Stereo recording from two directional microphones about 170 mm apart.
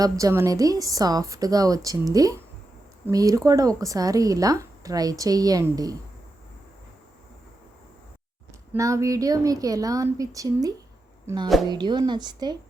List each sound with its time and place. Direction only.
0.0 s speech: 20° right (ahead or behind)
8.7 s speech: 20° right (ahead or behind)